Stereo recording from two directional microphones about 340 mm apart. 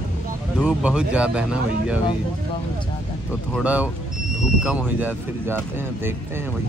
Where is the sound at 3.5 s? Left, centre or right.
Centre.